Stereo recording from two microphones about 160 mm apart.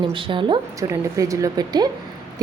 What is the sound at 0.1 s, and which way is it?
Speech, 30° right (ahead or behind).